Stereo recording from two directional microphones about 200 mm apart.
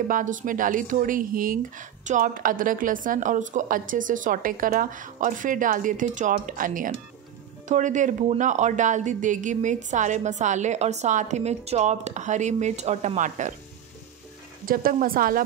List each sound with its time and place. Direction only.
0.1 s speech: 40° right (ahead or behind)
14.7 s speech: 45° right (ahead or behind)